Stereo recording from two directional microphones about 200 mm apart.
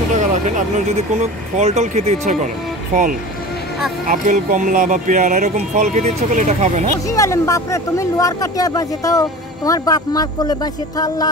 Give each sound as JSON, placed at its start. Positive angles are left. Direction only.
{"t": 0.1, "sound": "speech", "side_deg": -35}
{"t": 4.1, "sound": "speech", "side_deg": -40}
{"t": 7.1, "sound": "speech", "side_deg": 15}